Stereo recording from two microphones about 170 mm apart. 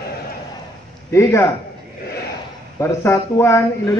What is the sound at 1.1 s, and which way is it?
Speech, 15° left (ahead or behind).